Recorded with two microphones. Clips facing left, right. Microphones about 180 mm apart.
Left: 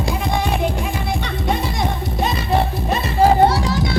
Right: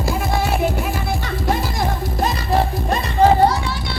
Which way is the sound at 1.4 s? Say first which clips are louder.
Right 1 dB; centre (ahead or behind).